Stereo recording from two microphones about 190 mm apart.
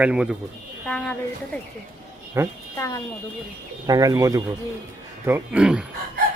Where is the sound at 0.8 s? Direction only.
5° left (ahead or behind).